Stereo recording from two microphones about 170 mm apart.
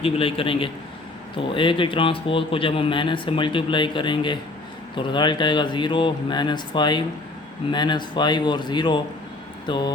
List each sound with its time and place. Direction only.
0.0 s a man's voice: 35° left (ahead or behind)